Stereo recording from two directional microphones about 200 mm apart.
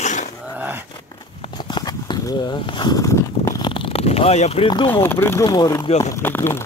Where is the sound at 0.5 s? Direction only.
10° right (ahead or behind).